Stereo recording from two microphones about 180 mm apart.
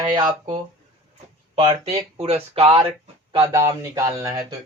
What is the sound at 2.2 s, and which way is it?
Speech, 35° right (ahead or behind).